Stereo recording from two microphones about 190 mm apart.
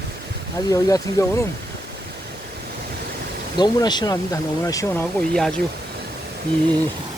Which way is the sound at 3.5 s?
20° left (ahead or behind).